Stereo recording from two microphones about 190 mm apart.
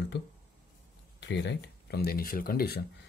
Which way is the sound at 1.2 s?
65° left (ahead or behind).